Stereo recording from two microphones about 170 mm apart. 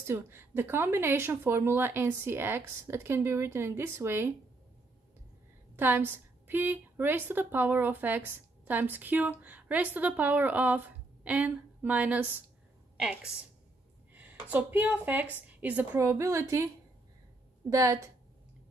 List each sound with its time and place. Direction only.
0.0 s speech: 15° right (ahead or behind)
5.8 s a woman's voice: 10° right (ahead or behind)
17.6 s a woman's voice: 20° right (ahead or behind)